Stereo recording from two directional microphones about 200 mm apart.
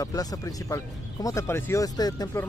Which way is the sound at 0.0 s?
20° left (ahead or behind).